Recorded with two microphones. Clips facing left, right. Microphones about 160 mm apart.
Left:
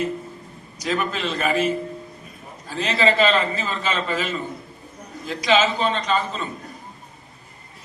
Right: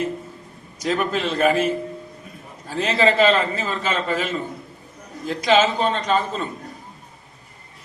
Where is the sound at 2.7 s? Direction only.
50° right (ahead or behind).